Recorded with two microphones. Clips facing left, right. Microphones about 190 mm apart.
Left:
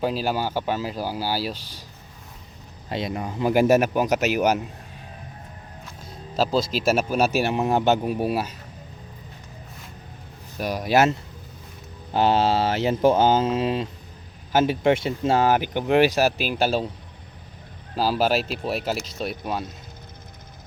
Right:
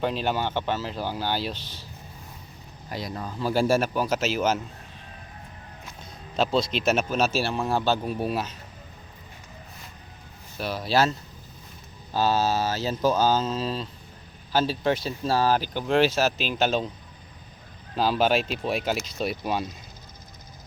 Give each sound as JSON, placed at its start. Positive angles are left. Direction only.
{"t": 0.0, "sound": "speech", "side_deg": 5}
{"t": 2.9, "sound": "speech", "side_deg": 20}
{"t": 6.3, "sound": "speech", "side_deg": 5}
{"t": 10.6, "sound": "speech", "side_deg": 15}
{"t": 12.1, "sound": "speech", "side_deg": 25}
{"t": 17.9, "sound": "speech", "side_deg": 5}